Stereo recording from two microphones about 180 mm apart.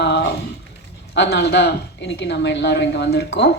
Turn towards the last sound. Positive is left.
turn(degrees=65)  # may be behind; listen again after turning